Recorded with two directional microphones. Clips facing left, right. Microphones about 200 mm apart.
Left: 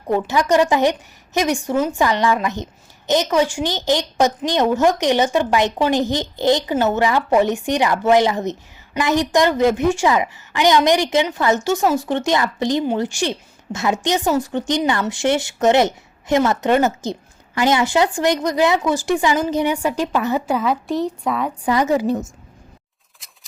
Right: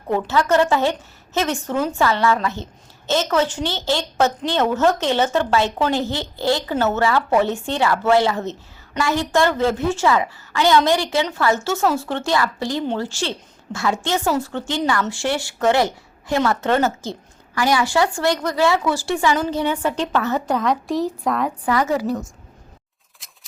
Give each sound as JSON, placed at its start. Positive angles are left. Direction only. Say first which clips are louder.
{"t": 0.1, "sound": "a woman's voice", "louder": "left 1 dB", "side_deg": 15}
{"t": 21.6, "sound": "a woman's voice", "louder": "left 5 dB", "side_deg": 20}